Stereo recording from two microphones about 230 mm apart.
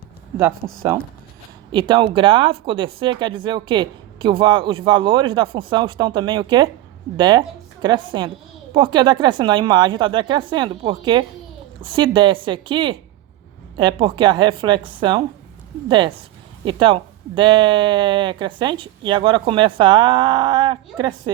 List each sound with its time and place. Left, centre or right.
0.3 s a woman's voice: centre